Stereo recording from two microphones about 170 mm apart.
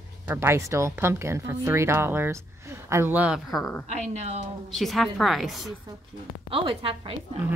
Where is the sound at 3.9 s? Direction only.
40° right (ahead or behind).